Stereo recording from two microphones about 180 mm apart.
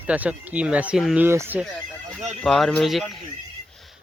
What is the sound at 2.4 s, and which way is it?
Speech, centre (ahead or behind).